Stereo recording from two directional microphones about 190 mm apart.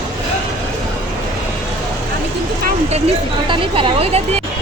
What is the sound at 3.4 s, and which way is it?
Speech, 25° right (ahead or behind).